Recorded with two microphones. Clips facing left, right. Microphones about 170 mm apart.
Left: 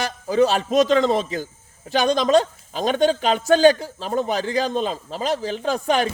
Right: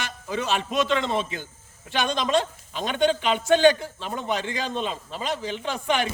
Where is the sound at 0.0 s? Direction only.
35° left (ahead or behind).